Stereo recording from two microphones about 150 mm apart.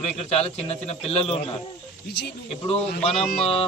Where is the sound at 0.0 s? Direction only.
45° left (ahead or behind).